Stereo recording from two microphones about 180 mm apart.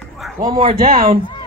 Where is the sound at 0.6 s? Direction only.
55° right (ahead or behind).